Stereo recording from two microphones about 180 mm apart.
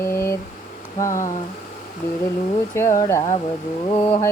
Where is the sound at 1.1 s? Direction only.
45° left (ahead or behind).